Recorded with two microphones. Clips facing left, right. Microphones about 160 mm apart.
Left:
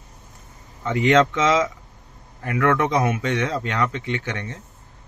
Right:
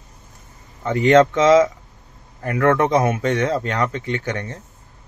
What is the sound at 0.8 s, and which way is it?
Speech, 45° right (ahead or behind).